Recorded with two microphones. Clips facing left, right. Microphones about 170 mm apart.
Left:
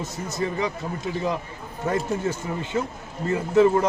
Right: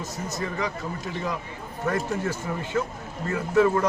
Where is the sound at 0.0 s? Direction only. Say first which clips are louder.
Left 3 dB; 25° left (ahead or behind).